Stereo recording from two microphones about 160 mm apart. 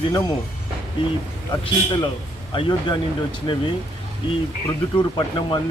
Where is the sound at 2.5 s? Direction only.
30° left (ahead or behind).